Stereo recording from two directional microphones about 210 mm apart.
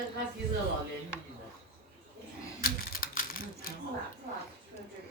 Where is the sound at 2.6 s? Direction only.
40° left (ahead or behind).